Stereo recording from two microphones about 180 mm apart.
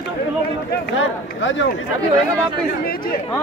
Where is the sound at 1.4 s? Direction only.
90° left.